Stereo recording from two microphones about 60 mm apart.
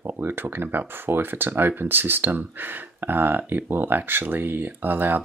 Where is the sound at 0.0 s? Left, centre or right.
Right.